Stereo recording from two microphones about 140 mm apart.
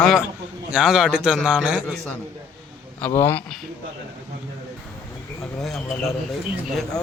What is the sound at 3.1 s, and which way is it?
Speech, 15° left (ahead or behind).